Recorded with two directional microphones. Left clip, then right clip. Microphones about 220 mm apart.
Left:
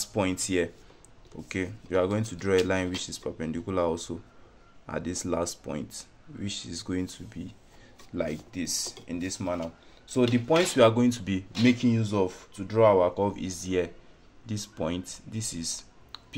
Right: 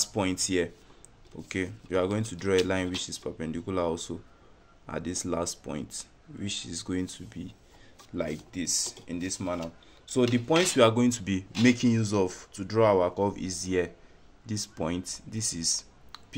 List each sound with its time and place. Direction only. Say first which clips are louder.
0.0 s speech: even; centre (ahead or behind)